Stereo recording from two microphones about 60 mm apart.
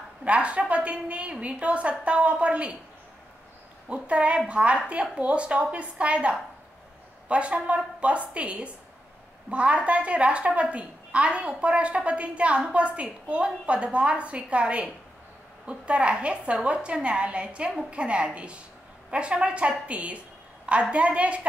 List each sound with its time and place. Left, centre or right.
0.2 s a woman's voice: centre
3.9 s a woman's voice: centre